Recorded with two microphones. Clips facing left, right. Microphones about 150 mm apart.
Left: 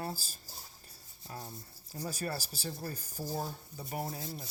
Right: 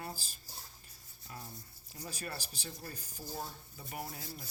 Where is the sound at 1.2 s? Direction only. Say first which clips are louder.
Left 4 dB; 35° left (ahead or behind).